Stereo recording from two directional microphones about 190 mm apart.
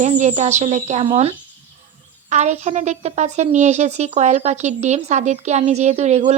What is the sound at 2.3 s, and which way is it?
A woman's voice, 40° right (ahead or behind).